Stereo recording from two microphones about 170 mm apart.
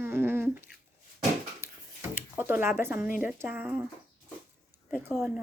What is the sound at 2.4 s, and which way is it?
Speech, 10° right (ahead or behind).